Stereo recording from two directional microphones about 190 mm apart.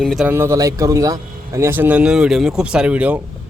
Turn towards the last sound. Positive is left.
turn(degrees=-5)  # may be behind; listen again after turning